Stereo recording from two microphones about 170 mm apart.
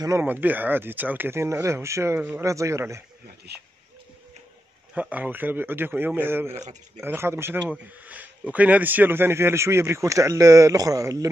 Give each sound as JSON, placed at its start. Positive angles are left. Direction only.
{"t": 0.0, "sound": "speech", "side_deg": -15}
{"t": 3.5, "sound": "speech", "side_deg": -75}
{"t": 4.9, "sound": "speech", "side_deg": -10}